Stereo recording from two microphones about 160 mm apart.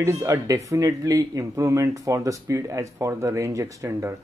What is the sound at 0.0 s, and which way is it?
Speech, 20° right (ahead or behind).